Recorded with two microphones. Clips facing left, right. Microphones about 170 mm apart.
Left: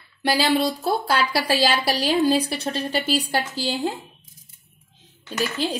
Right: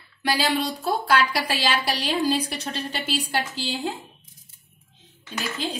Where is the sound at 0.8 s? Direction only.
30° left (ahead or behind).